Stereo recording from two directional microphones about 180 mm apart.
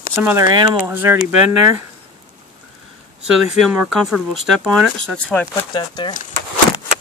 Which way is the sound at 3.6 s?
5° right (ahead or behind).